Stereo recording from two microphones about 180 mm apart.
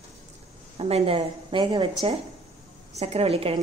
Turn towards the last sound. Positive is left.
turn(degrees=-35)  # may be behind; listen again after turning